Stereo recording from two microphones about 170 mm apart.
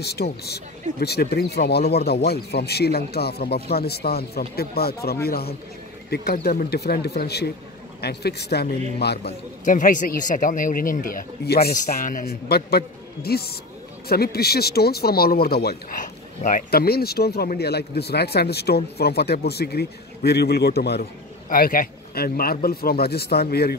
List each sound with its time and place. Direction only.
0.0 s speech: 70° left (ahead or behind)
9.7 s speech: 50° left (ahead or behind); by 23.8 s 70° left (ahead or behind)